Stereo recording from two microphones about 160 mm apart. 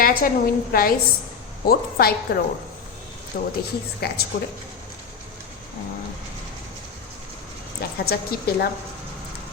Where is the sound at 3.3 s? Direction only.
60° left (ahead or behind).